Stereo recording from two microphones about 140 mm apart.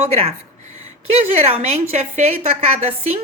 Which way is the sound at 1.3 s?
50° right (ahead or behind).